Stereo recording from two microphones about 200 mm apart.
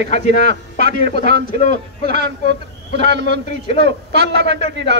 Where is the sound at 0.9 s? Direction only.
55° right (ahead or behind).